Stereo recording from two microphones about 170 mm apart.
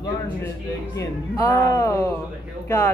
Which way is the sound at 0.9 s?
20° left (ahead or behind).